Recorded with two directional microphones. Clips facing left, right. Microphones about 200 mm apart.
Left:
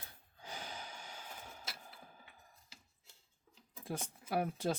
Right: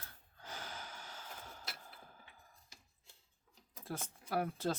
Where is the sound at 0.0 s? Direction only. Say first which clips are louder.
Left 1 dB; 15° left (ahead or behind).